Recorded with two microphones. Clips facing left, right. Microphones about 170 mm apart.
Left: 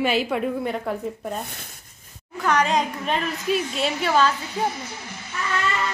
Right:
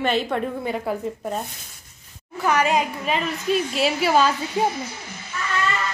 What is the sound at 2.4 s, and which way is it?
A woman's voice, 10° right (ahead or behind).